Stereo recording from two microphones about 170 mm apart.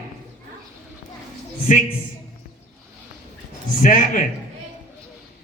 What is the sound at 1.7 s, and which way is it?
Speech, 50° left (ahead or behind).